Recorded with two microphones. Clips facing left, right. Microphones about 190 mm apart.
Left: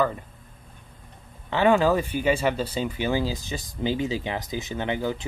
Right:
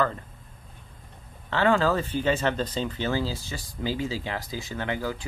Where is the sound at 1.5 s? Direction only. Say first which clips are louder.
Left 3 dB; 15° left (ahead or behind).